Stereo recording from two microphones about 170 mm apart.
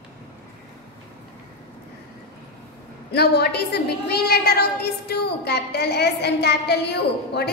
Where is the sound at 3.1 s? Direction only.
70° left (ahead or behind).